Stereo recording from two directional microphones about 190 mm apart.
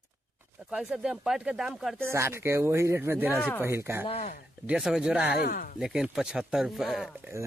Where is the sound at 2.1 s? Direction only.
15° right (ahead or behind).